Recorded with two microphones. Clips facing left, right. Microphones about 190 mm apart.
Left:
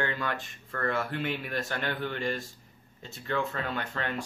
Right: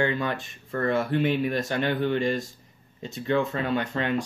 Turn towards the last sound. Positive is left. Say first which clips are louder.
# right 7 dB
turn(degrees=-15)  # may be behind; listen again after turning